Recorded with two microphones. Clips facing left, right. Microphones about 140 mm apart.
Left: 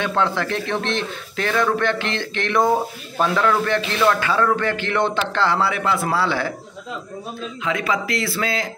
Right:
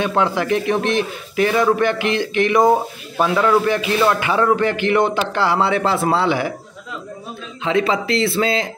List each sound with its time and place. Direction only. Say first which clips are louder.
0.0 s a man's voice: right 3 dB; 15° right (ahead or behind)
5.7 s speech: right 4 dB; 30° right (ahead or behind)
7.6 s speech: right 5 dB; 30° right (ahead or behind)